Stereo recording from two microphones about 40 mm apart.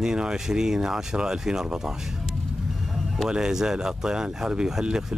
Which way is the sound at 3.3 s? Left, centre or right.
Centre.